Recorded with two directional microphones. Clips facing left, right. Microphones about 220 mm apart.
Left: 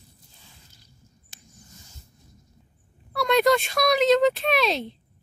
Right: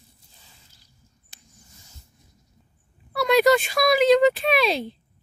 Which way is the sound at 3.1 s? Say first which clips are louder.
Right 2 dB; 5° right (ahead or behind).